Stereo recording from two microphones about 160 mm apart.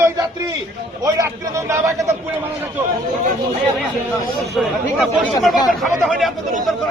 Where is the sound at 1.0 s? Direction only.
20° right (ahead or behind).